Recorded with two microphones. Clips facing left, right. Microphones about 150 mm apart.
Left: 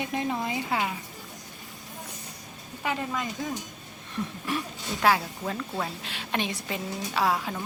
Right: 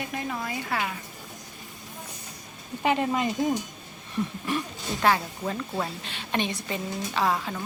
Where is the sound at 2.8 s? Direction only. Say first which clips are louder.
Right 6 dB; 20° right (ahead or behind).